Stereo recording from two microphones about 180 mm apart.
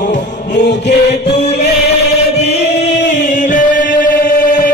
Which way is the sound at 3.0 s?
75° left (ahead or behind).